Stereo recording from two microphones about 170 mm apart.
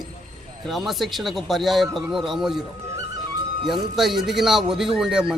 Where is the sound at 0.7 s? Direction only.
Centre (ahead or behind).